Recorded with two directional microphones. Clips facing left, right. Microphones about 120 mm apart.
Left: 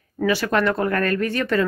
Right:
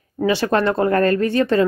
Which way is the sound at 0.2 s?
25° right (ahead or behind).